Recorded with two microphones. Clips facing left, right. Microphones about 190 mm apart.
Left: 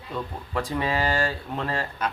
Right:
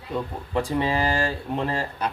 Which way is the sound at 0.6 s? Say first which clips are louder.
Right 1 dB; 30° right (ahead or behind).